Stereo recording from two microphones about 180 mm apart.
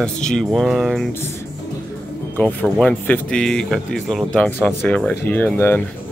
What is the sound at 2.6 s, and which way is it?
Speech, 5° left (ahead or behind).